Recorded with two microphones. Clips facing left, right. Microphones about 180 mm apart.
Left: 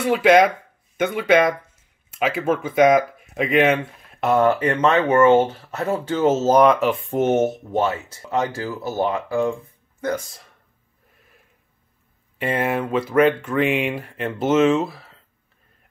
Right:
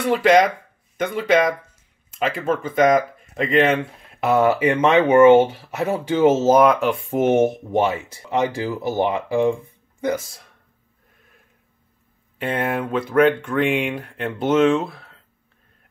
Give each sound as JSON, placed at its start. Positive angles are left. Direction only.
{"t": 0.0, "sound": "speech", "side_deg": 5}
{"t": 7.1, "sound": "speech", "side_deg": -10}
{"t": 12.4, "sound": "speech", "side_deg": 5}